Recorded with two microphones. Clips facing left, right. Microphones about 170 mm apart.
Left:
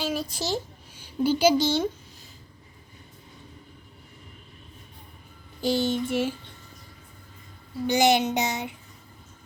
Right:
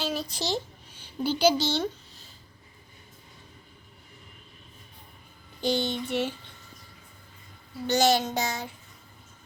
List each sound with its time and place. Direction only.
0.0 s a sound: 10° left (ahead or behind)
1.0 s speech: 10° left (ahead or behind)
5.5 s speech: 5° left (ahead or behind)
7.9 s child singing: 15° left (ahead or behind)